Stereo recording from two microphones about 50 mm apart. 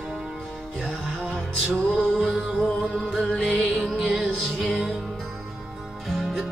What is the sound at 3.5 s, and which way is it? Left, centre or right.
Music, centre.